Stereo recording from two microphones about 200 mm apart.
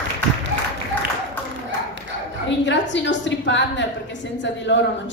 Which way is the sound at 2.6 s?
65° left (ahead or behind).